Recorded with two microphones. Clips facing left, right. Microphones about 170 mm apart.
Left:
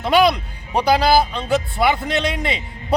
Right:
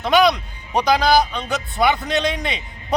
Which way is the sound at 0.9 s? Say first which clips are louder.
Left 1 dB; 5° left (ahead or behind).